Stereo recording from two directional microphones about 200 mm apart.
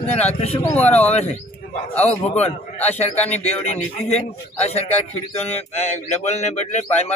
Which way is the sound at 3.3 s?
30° left (ahead or behind).